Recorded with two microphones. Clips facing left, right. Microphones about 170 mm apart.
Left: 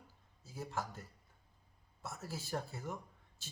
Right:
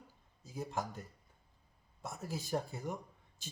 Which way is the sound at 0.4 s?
15° right (ahead or behind).